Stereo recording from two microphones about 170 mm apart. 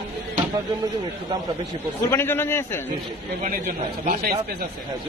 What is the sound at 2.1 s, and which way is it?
Speech, 15° left (ahead or behind).